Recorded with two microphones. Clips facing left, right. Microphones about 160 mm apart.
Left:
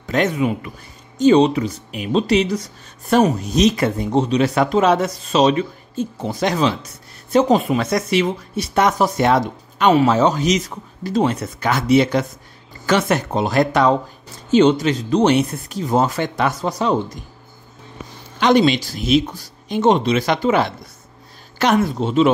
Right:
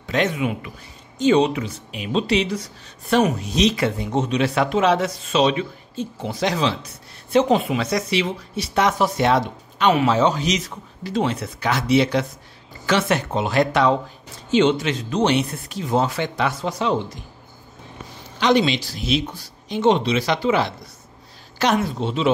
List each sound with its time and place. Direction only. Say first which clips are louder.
0.1 s speech: left 3 dB; 45° left (ahead or behind)
18.4 s speech: left 4 dB; 50° left (ahead or behind)